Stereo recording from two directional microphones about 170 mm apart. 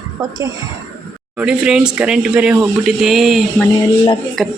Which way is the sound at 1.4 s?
5° right (ahead or behind).